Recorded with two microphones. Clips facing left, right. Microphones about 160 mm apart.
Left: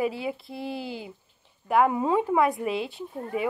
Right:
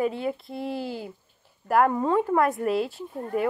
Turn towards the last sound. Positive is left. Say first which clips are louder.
# right 2 dB
turn(degrees=0)  # may be behind; listen again after turning